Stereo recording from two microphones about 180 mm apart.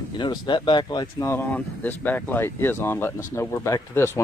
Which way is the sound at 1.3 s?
10° left (ahead or behind).